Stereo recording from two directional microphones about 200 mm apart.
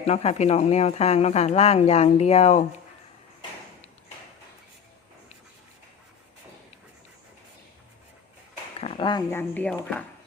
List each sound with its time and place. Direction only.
0.0 s speech: 30° left (ahead or behind)
8.8 s a sound: 25° left (ahead or behind)
9.3 s speech: 10° left (ahead or behind)